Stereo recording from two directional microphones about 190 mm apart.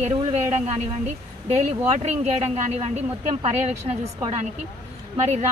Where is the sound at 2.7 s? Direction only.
35° right (ahead or behind).